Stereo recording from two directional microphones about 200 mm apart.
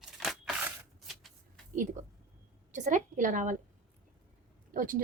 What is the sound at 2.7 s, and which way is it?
Speech, 35° right (ahead or behind).